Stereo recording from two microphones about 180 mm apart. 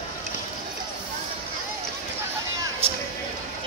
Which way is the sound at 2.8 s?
35° right (ahead or behind).